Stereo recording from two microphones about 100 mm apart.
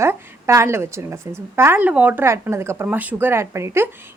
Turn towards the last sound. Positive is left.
turn(degrees=-25)  # may be behind; listen again after turning